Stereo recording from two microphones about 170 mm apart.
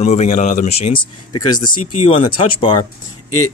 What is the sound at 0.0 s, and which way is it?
Speech, 40° left (ahead or behind).